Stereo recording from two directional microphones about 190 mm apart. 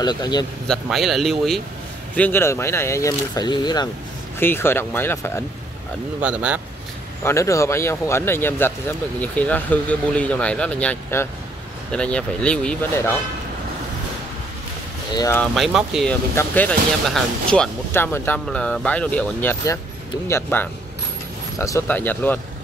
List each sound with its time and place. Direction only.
0.0 s a man's voice: 20° left (ahead or behind)
0.7 s speech: centre (ahead or behind); by 3.9 s 20° left (ahead or behind)
4.4 s speech: 10° left (ahead or behind)
6.2 s speech: 5° right (ahead or behind)
7.2 s speech: 15° left (ahead or behind)
15.1 s speech: 15° left (ahead or behind)
15.5 s speech: centre (ahead or behind)